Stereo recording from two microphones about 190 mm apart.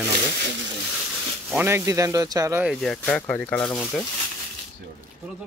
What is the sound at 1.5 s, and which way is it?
Speech, 10° right (ahead or behind).